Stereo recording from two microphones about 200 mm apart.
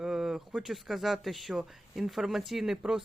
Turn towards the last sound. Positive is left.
turn(degrees=0)  # may be behind; listen again after turning